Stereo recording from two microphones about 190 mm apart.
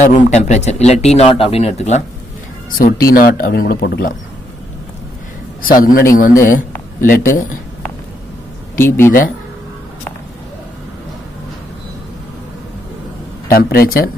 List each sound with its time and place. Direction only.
0.0 s speech: 40° left (ahead or behind)
2.8 s speech: 50° left (ahead or behind)
5.6 s a man's voice: 50° left (ahead or behind)
8.7 s speech: 10° left (ahead or behind)
13.5 s speech: 50° left (ahead or behind)